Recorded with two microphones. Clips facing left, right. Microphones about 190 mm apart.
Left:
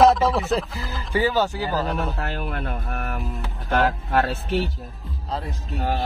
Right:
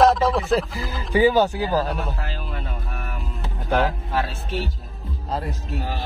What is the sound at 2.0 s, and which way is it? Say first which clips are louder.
Speech: left 3 dB; 60° left (ahead or behind).